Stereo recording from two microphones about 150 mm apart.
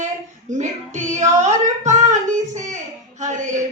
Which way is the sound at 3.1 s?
55° right (ahead or behind).